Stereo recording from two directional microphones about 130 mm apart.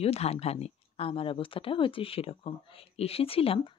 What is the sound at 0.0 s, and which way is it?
Speech, 50° left (ahead or behind).